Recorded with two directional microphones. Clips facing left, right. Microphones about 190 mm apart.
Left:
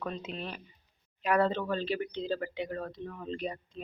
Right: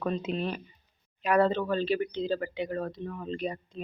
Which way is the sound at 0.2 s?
70° right (ahead or behind).